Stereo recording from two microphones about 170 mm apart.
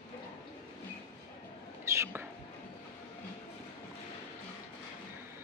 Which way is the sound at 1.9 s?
15° right (ahead or behind).